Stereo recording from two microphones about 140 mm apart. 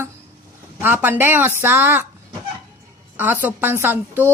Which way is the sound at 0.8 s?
15° right (ahead or behind).